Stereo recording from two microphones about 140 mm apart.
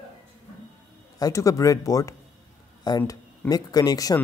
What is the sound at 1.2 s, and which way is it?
Speech, 25° left (ahead or behind).